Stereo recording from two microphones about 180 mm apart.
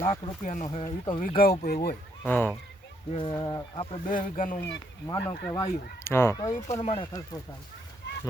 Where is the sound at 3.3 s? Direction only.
20° left (ahead or behind).